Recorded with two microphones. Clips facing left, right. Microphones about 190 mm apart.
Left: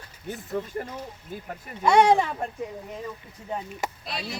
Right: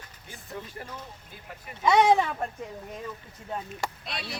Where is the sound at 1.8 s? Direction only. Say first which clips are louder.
Left 2 dB; 10° left (ahead or behind).